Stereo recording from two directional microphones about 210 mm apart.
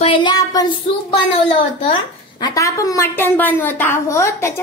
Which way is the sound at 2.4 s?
15° left (ahead or behind).